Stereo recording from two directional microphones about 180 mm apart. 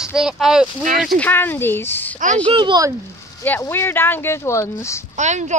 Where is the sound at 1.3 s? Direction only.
10° left (ahead or behind).